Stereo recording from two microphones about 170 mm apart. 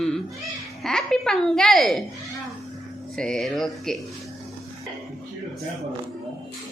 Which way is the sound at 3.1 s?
5° left (ahead or behind).